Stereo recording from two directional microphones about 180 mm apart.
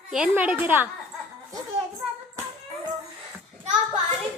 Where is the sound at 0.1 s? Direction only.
5° right (ahead or behind).